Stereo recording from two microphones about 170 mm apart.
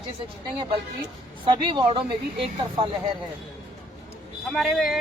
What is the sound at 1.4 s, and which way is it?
Speech, 30° right (ahead or behind).